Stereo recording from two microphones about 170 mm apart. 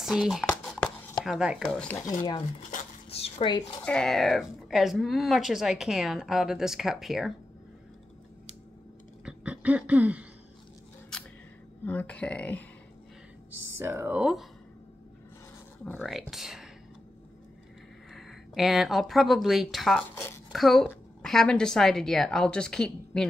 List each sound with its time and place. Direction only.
0.0 s a sound: centre (ahead or behind)
1.2 s a woman's voice: 5° right (ahead or behind)
3.1 s zipper: 35° left (ahead or behind)
3.8 s a woman's voice: 5° left (ahead or behind)
9.2 s a sound: 5° right (ahead or behind)
11.8 s speech: 10° left (ahead or behind)
13.7 s speech: 15° right (ahead or behind)
15.8 s speech: centre (ahead or behind)
18.1 s a woman's voice: centre (ahead or behind)